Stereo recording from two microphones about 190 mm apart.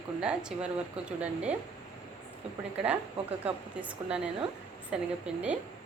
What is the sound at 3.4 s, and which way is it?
A woman's voice, 5° right (ahead or behind).